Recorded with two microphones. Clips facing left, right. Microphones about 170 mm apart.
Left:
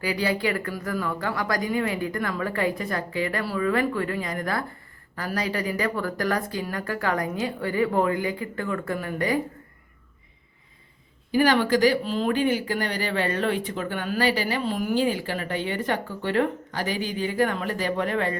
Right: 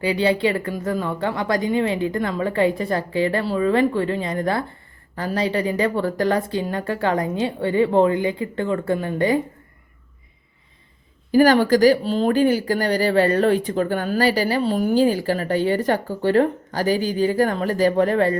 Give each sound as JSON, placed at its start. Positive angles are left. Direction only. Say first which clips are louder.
{"t": 0.0, "sound": "speech", "louder": "right 6 dB", "side_deg": -25}
{"t": 11.3, "sound": "speech", "louder": "right 6 dB", "side_deg": -40}